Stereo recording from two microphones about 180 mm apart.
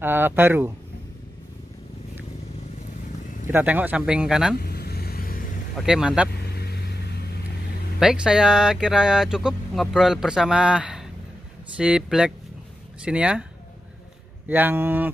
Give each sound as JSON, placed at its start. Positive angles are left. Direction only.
{"t": 0.0, "sound": "speech", "side_deg": -10}
{"t": 3.4, "sound": "speech", "side_deg": -10}
{"t": 4.6, "sound": "vehicle", "side_deg": 60}
{"t": 5.8, "sound": "speech", "side_deg": -5}
{"t": 6.5, "sound": "vehicle", "side_deg": 60}
{"t": 8.0, "sound": "speech", "side_deg": -5}
{"t": 14.5, "sound": "speech", "side_deg": -10}